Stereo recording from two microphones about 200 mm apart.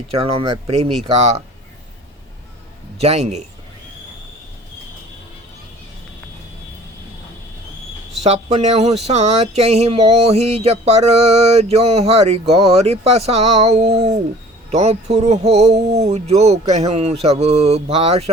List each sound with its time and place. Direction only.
0.1 s speech: 25° right (ahead or behind)
3.0 s speech: 30° right (ahead or behind)
8.2 s speech: 35° right (ahead or behind)